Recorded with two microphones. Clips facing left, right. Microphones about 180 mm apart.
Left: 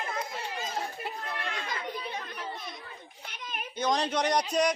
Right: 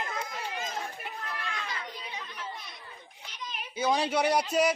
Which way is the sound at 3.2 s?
55° left (ahead or behind).